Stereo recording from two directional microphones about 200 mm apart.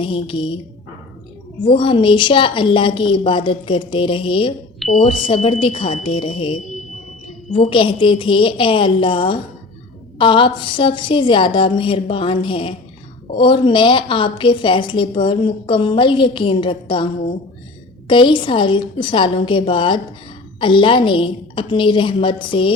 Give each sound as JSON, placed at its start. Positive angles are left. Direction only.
{"t": 0.0, "sound": "a woman's voice", "side_deg": 25}
{"t": 1.6, "sound": "a woman's voice", "side_deg": 25}
{"t": 18.1, "sound": "a woman's voice", "side_deg": 25}